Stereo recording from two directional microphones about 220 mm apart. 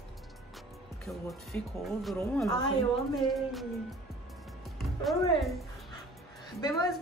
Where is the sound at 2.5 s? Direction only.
20° left (ahead or behind).